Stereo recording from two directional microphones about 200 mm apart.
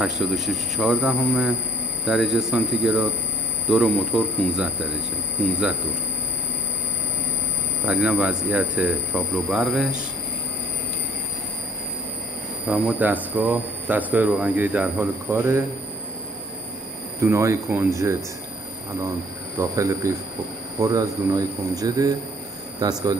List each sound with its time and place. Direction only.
0.0 s speech: centre (ahead or behind)
7.8 s speech: 5° right (ahead or behind)
12.6 s speech: 5° right (ahead or behind)
17.2 s speech: 15° right (ahead or behind)
19.6 s speech: 15° right (ahead or behind)